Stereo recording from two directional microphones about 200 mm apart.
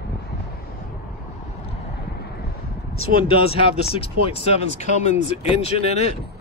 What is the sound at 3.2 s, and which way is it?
Speech, 30° left (ahead or behind).